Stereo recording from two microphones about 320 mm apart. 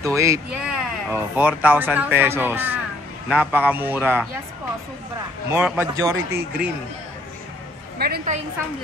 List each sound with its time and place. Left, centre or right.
0.0 s a man's voice: centre
5.5 s a man's voice: centre
8.0 s a woman's voice: right